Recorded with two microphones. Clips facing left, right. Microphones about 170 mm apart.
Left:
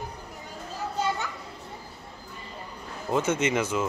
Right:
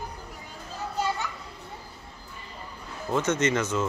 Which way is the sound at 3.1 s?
10° left (ahead or behind).